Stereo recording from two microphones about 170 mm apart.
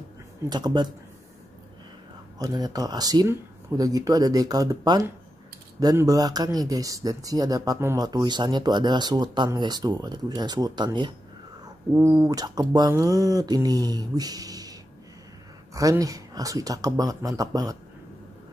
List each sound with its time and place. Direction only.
0.5 s speech: 25° right (ahead or behind)
2.3 s speech: 20° right (ahead or behind)